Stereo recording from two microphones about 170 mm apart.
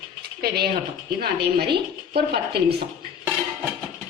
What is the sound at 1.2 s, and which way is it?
Speech, 65° right (ahead or behind).